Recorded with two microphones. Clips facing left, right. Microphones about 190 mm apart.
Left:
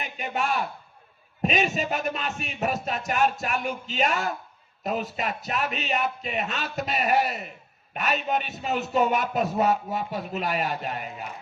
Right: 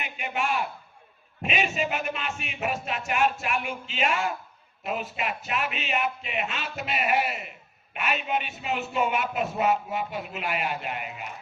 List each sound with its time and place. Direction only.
0.0 s a man's voice: 40° left (ahead or behind)